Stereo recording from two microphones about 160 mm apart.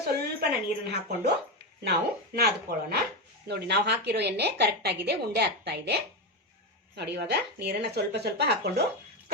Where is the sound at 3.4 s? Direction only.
90° right.